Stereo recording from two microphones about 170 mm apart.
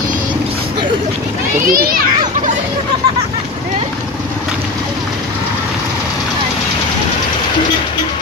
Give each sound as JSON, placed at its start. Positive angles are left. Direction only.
{"t": 1.7, "sound": "a child's voice", "side_deg": -60}